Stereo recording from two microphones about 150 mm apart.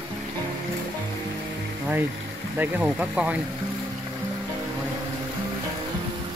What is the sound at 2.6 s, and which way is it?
Speech, 10° right (ahead or behind).